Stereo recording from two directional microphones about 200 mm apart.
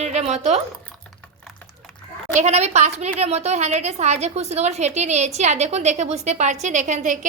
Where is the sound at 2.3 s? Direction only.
35° right (ahead or behind).